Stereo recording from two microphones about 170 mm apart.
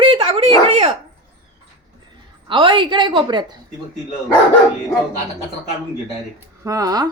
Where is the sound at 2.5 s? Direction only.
30° right (ahead or behind).